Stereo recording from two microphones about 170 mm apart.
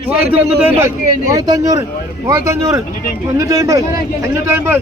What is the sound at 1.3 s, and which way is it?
A man's voice, 20° right (ahead or behind).